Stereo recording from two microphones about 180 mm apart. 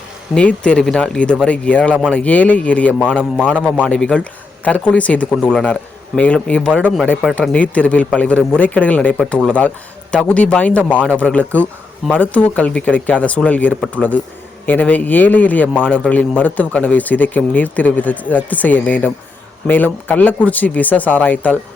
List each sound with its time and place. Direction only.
0.3 s a man's voice: 5° left (ahead or behind)